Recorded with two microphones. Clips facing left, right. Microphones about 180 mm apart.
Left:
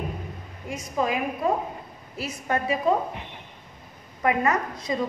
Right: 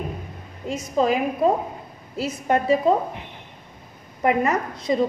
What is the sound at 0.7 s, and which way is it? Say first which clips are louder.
A woman's voice: right 6 dB; 25° right (ahead or behind).